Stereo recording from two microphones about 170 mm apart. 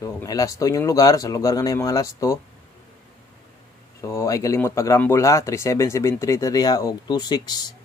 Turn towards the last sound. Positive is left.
turn(degrees=25)  # may be behind; listen again after turning